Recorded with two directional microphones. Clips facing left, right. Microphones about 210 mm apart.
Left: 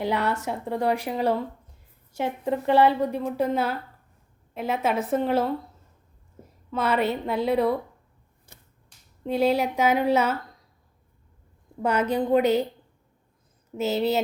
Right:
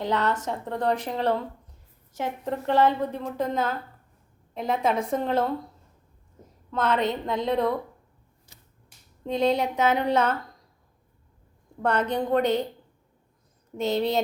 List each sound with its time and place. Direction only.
0.0 s a woman's voice: 10° left (ahead or behind)
6.7 s a woman's voice: 10° left (ahead or behind)
8.5 s typewriter: 55° left (ahead or behind)
9.2 s a woman's voice: 5° left (ahead or behind)
11.8 s a woman's voice: 10° left (ahead or behind)
13.7 s a woman's voice: 5° left (ahead or behind)